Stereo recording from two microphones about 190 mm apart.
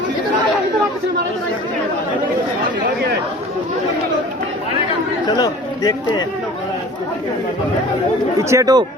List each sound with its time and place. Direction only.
5.2 s speech: 20° left (ahead or behind)
8.4 s speech: 15° right (ahead or behind)